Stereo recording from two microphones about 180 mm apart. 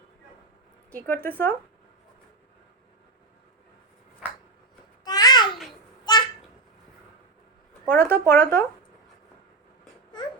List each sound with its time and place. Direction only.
1.0 s speech: 10° left (ahead or behind)
5.0 s babbling: 20° left (ahead or behind)
7.9 s speech: 10° left (ahead or behind)